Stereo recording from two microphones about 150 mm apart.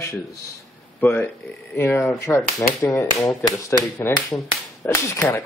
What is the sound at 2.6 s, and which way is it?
Speech, centre (ahead or behind).